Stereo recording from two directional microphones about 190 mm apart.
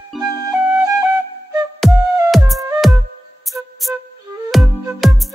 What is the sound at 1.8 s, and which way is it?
Music, centre (ahead or behind).